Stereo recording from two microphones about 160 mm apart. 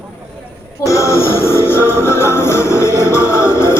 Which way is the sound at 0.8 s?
20° left (ahead or behind).